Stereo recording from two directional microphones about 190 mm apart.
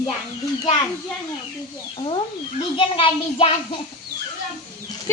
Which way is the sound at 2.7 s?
30° left (ahead or behind).